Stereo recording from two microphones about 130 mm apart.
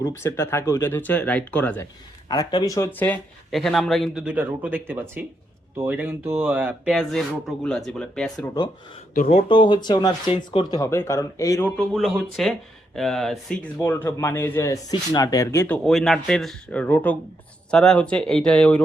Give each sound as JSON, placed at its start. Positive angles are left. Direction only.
{"t": 0.1, "sound": "speech", "side_deg": 20}
{"t": 2.3, "sound": "speech", "side_deg": 30}
{"t": 3.5, "sound": "speech", "side_deg": 0}
{"t": 9.1, "sound": "speech", "side_deg": 60}
{"t": 9.5, "sound": "speech", "side_deg": 35}
{"t": 10.8, "sound": "speech", "side_deg": 20}
{"t": 11.8, "sound": "speech", "side_deg": 0}
{"t": 13.8, "sound": "speech", "side_deg": 20}
{"t": 15.8, "sound": "speech", "side_deg": 0}